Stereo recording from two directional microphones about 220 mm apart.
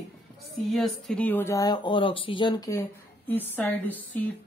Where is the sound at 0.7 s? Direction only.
Centre (ahead or behind).